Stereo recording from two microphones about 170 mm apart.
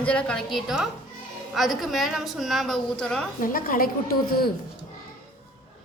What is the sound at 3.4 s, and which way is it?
A woman's voice, 55° left (ahead or behind).